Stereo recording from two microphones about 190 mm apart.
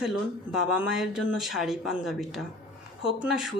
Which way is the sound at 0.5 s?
Centre (ahead or behind).